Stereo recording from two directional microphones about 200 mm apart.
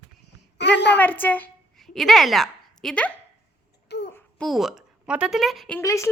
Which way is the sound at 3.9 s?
55° left (ahead or behind).